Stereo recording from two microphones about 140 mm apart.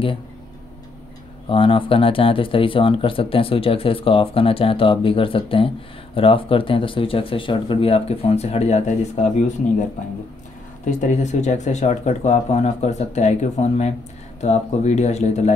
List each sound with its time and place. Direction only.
1.5 s speech: 40° left (ahead or behind); by 9.2 s 55° left (ahead or behind)
10.9 s speech: 55° left (ahead or behind)